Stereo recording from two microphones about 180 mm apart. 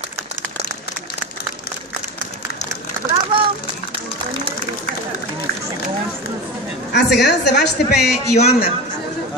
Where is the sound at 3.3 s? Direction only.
25° right (ahead or behind).